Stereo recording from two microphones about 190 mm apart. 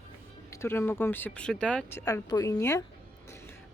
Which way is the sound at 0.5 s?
15° left (ahead or behind).